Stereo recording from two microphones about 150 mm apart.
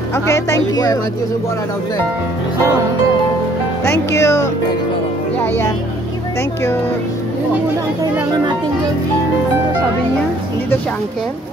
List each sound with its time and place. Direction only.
0.1 s speech: 20° left (ahead or behind)
3.8 s speech: 20° left (ahead or behind)
8.0 s speech: 25° right (ahead or behind)